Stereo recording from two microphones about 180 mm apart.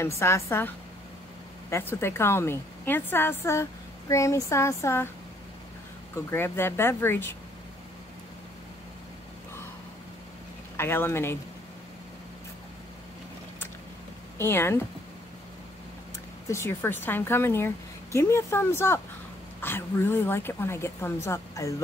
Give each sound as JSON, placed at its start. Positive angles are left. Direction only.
{"t": 0.0, "sound": "a woman's voice", "side_deg": 15}
{"t": 6.1, "sound": "a woman's voice", "side_deg": 15}
{"t": 10.8, "sound": "a woman's voice", "side_deg": 15}
{"t": 14.4, "sound": "a woman's voice", "side_deg": 15}
{"t": 16.4, "sound": "a woman's voice", "side_deg": 15}